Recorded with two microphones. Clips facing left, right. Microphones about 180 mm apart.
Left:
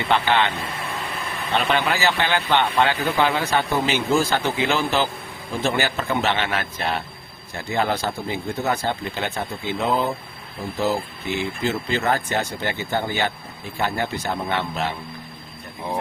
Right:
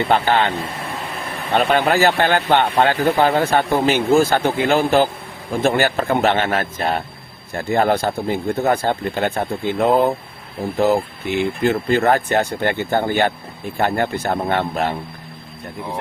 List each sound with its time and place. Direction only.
0.0 s speech: 45° right (ahead or behind)
1.5 s speech: 45° right (ahead or behind)